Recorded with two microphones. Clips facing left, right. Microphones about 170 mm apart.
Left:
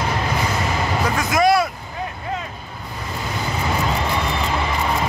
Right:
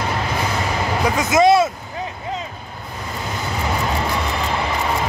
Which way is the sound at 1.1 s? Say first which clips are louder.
Right 4 dB; 20° right (ahead or behind).